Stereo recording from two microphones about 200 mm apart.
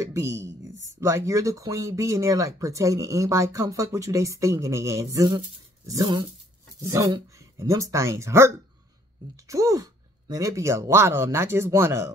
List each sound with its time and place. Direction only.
0.0 s speech: 15° right (ahead or behind)